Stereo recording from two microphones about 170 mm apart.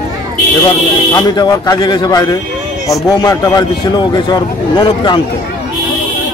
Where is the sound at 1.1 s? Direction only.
20° left (ahead or behind).